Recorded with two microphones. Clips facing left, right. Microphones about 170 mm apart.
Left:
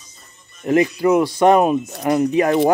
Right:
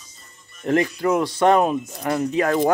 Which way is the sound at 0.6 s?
10° left (ahead or behind).